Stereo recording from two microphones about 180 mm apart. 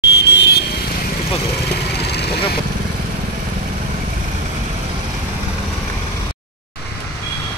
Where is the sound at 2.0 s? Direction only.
65° left (ahead or behind).